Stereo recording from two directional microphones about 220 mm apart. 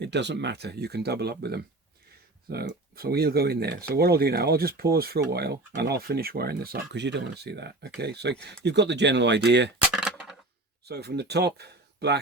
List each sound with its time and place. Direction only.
0.0 s speech: 50° right (ahead or behind)
9.9 s a sound: centre (ahead or behind)
10.8 s speech: 45° right (ahead or behind)